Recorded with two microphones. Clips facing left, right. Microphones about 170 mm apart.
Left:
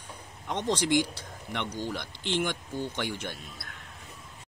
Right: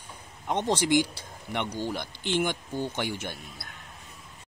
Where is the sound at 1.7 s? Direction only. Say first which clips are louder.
Right 2 dB; 10° right (ahead or behind).